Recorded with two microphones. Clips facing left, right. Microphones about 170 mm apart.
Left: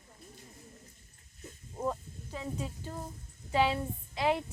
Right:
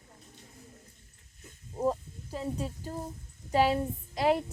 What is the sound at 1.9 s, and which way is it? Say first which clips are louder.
A woman's voice: right 4 dB; 35° right (ahead or behind).